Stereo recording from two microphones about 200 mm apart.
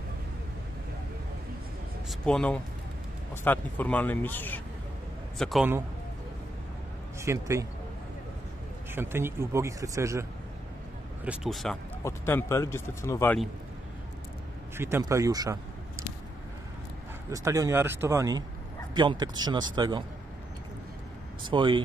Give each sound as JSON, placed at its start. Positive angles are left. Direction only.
{"t": 2.0, "sound": "speech", "side_deg": 5}
{"t": 7.2, "sound": "speech", "side_deg": -15}
{"t": 8.9, "sound": "speech", "side_deg": -10}
{"t": 11.2, "sound": "speech", "side_deg": 0}
{"t": 12.0, "sound": "speech", "side_deg": 10}
{"t": 14.8, "sound": "speech", "side_deg": -10}
{"t": 17.3, "sound": "speech", "side_deg": -15}
{"t": 21.5, "sound": "speech", "side_deg": -25}